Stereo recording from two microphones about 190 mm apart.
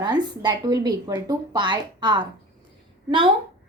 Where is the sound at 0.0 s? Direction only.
25° right (ahead or behind).